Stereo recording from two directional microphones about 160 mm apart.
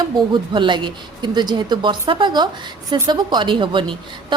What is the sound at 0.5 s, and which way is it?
A woman's voice, 30° right (ahead or behind).